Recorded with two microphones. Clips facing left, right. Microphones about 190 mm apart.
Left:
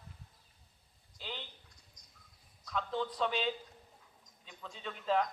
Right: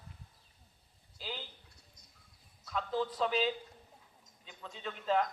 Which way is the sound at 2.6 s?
Centre (ahead or behind).